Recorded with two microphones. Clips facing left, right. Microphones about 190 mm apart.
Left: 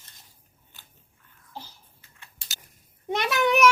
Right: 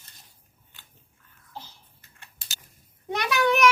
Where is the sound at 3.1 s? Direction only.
20° left (ahead or behind).